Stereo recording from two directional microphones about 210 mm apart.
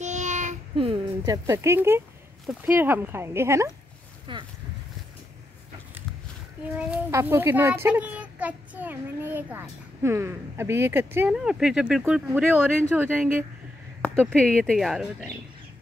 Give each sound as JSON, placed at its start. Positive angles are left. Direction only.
{"t": 0.0, "sound": "a sound", "side_deg": -35}
{"t": 2.4, "sound": "a child's voice", "side_deg": -10}
{"t": 6.7, "sound": "a child's voice", "side_deg": -10}
{"t": 14.0, "sound": "speech", "side_deg": 5}